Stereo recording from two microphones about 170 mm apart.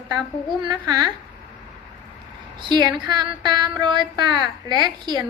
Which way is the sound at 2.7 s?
25° right (ahead or behind).